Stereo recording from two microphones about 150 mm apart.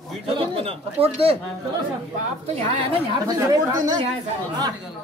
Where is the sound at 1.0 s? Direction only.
40° right (ahead or behind).